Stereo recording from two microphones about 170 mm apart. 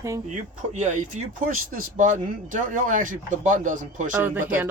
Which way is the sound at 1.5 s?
55° right (ahead or behind).